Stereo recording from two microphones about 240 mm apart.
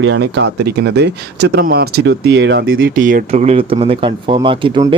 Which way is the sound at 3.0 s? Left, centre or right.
Right.